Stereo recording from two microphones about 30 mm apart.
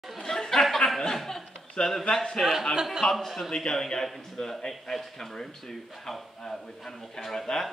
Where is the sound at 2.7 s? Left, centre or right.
Centre.